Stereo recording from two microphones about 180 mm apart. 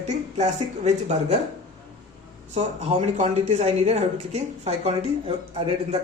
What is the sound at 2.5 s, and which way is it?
A woman's voice, 35° right (ahead or behind).